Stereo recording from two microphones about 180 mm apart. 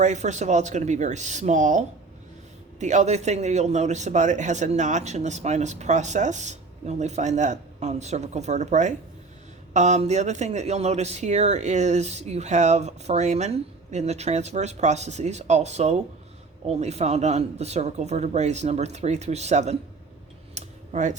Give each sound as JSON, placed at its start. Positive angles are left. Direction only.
{"t": 0.0, "sound": "speech", "side_deg": -40}
{"t": 2.8, "sound": "speech", "side_deg": -40}
{"t": 20.6, "sound": "computer keyboard", "side_deg": -40}